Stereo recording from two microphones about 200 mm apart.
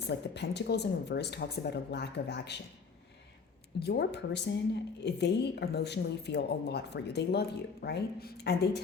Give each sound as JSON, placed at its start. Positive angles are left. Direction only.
{"t": 0.0, "sound": "a woman's voice", "side_deg": 55}
{"t": 3.8, "sound": "a woman's voice", "side_deg": 55}